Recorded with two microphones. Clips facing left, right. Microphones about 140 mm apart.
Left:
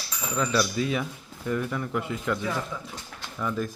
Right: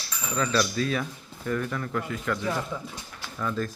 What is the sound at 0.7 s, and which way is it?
A man's voice, 15° left (ahead or behind).